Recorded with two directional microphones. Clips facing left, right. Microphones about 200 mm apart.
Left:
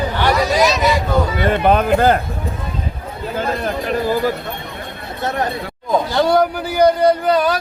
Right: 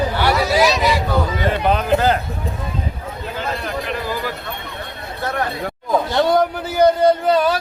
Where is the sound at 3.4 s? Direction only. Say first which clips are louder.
Left 5 dB; 45° left (ahead or behind).